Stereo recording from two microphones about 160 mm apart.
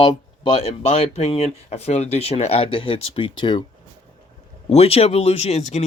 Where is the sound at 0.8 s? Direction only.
40° left (ahead or behind).